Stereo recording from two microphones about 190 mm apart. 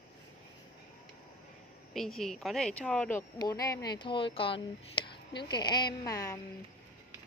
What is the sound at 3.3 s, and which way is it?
Speech, 20° left (ahead or behind).